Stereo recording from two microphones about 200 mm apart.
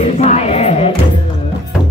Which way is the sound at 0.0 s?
35° left (ahead or behind).